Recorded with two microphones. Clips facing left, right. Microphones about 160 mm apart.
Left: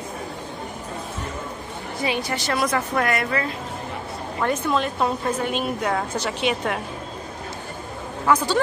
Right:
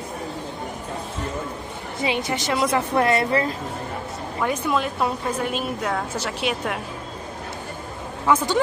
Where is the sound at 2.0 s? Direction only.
20° right (ahead or behind).